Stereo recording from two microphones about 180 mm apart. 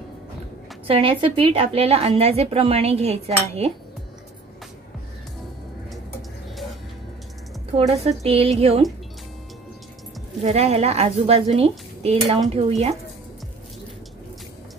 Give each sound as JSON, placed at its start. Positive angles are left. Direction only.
{"t": 0.8, "sound": "a woman's voice", "side_deg": -30}
{"t": 7.7, "sound": "a woman's voice", "side_deg": -35}
{"t": 10.4, "sound": "a woman's voice", "side_deg": -35}